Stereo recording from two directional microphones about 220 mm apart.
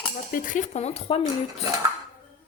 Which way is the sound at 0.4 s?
35° left (ahead or behind).